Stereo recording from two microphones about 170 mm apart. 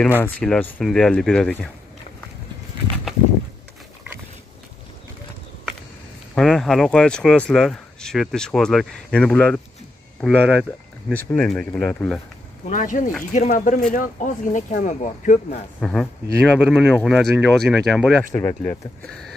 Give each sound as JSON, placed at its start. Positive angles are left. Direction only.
{"t": 0.2, "sound": "speech", "side_deg": 10}
{"t": 6.3, "sound": "speech", "side_deg": 5}
{"t": 11.1, "sound": "speech", "side_deg": 10}
{"t": 12.6, "sound": "speech", "side_deg": 50}
{"t": 15.8, "sound": "speech", "side_deg": 5}